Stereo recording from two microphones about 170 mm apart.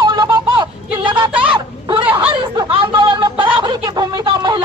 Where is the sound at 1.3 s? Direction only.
5° right (ahead or behind).